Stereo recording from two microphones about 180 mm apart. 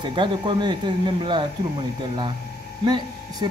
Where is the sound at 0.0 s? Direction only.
25° right (ahead or behind).